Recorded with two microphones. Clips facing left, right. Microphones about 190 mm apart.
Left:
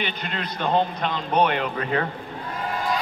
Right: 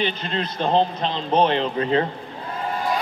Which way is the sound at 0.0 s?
30° right (ahead or behind).